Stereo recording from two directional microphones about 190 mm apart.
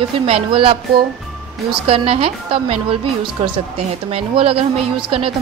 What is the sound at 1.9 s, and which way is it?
Speech, 30° right (ahead or behind).